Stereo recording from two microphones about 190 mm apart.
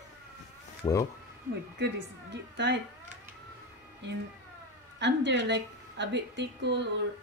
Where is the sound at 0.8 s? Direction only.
20° left (ahead or behind).